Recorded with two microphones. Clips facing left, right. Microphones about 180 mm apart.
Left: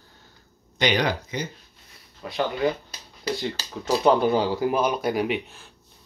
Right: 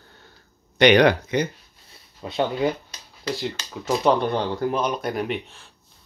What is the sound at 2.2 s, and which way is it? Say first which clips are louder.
Speech: right 2 dB; 25° right (ahead or behind).